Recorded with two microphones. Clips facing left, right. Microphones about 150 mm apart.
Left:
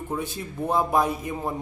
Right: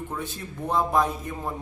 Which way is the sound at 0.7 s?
10° left (ahead or behind).